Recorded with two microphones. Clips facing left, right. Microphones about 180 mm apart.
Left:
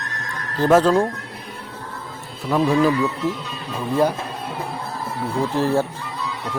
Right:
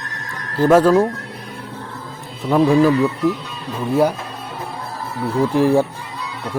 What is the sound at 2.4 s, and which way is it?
Speech, 15° right (ahead or behind).